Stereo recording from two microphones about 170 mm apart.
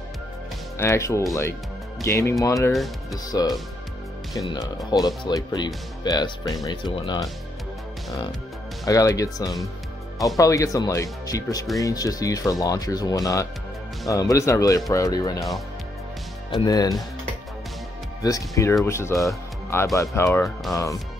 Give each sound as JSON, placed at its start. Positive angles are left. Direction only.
{"t": 0.7, "sound": "speech", "side_deg": 15}
{"t": 2.7, "sound": "speech", "side_deg": 0}
{"t": 3.3, "sound": "speech", "side_deg": 20}
{"t": 8.8, "sound": "speech", "side_deg": 20}
{"t": 16.6, "sound": "speech", "side_deg": 20}
{"t": 18.2, "sound": "speech", "side_deg": 20}